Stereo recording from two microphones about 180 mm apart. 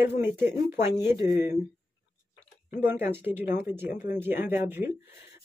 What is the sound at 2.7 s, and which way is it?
Speech, 10° right (ahead or behind).